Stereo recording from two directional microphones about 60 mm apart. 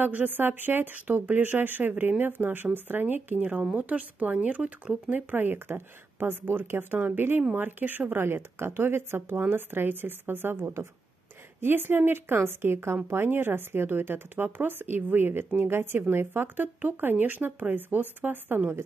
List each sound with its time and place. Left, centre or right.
0.0 s speech: right
5.1 s speech: right